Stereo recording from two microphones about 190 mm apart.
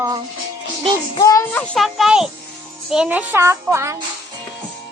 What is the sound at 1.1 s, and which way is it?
Speech, 15° left (ahead or behind).